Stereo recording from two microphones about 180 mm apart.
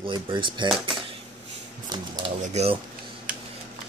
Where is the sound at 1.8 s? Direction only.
25° right (ahead or behind).